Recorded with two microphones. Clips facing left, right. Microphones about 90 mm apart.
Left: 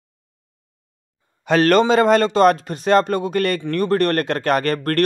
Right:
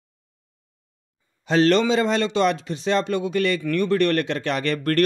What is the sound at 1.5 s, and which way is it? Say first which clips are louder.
Speech: left 3 dB; 55° left (ahead or behind).